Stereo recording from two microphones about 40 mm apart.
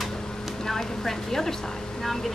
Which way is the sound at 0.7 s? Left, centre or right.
Centre.